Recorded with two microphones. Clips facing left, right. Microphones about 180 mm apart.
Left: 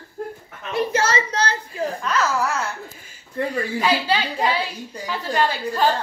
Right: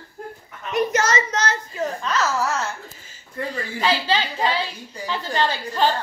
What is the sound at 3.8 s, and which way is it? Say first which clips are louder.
A woman's voice: right 1 dB; 10° left (ahead or behind).